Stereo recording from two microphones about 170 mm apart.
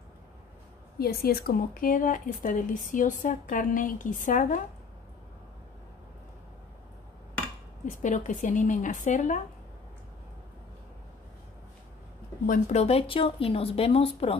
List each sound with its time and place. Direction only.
0.9 s speech: 65° left (ahead or behind)
7.8 s speech: 50° left (ahead or behind)
12.4 s speech: 40° left (ahead or behind)